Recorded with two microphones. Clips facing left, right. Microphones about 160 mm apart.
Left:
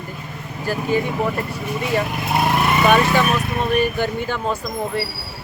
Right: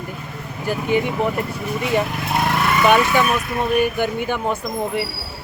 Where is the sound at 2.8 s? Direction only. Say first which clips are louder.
Right 1 dB; 15° right (ahead or behind).